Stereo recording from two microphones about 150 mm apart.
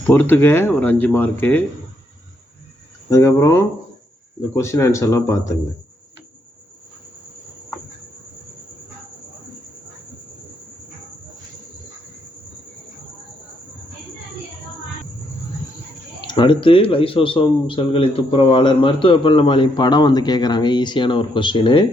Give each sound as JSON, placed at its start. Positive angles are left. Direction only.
{"t": 0.1, "sound": "speech", "side_deg": 15}
{"t": 3.1, "sound": "speech", "side_deg": 20}
{"t": 16.2, "sound": "speech", "side_deg": 30}